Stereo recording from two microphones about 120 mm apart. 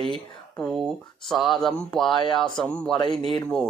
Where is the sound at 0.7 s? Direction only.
Centre (ahead or behind).